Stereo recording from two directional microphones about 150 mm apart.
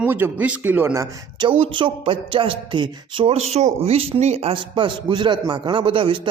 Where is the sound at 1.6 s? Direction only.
35° right (ahead or behind).